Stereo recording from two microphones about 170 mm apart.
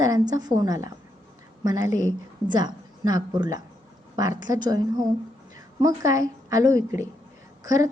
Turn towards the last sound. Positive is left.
turn(degrees=-20)  # may be behind; listen again after turning